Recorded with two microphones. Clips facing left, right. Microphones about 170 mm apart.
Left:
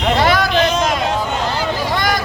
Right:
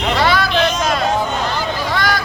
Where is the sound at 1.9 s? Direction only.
20° left (ahead or behind).